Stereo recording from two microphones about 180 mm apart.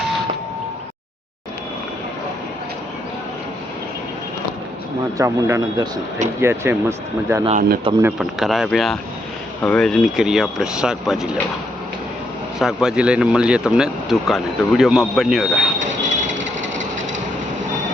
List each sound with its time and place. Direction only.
5.1 s a man's voice: 15° right (ahead or behind)
8.0 s speech: centre (ahead or behind)
12.5 s speech: centre (ahead or behind)
15.8 s mechanisms: 45° right (ahead or behind)